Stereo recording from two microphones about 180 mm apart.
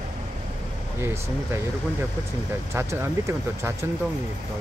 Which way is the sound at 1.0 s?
15° right (ahead or behind).